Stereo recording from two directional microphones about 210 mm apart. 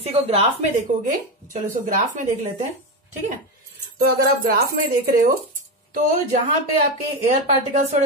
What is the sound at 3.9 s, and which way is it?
Speech, 45° right (ahead or behind).